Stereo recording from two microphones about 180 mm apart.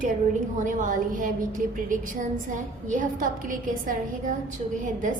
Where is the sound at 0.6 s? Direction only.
45° right (ahead or behind).